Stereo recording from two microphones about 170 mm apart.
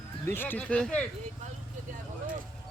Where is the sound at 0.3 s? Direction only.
10° left (ahead or behind).